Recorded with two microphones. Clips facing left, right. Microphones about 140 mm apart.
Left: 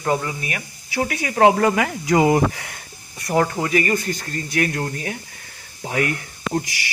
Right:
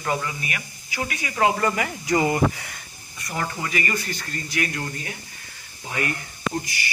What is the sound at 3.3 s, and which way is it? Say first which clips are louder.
Speech: left 9 dB; 45° left (ahead or behind).